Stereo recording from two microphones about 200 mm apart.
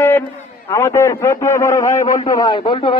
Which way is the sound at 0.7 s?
15° left (ahead or behind).